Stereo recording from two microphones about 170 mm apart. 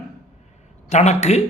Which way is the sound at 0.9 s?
40° left (ahead or behind).